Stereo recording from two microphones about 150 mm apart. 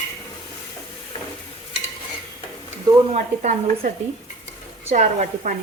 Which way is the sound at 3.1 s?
55° right (ahead or behind).